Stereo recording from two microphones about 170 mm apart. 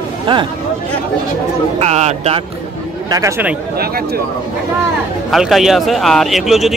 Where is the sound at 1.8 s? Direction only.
40° right (ahead or behind).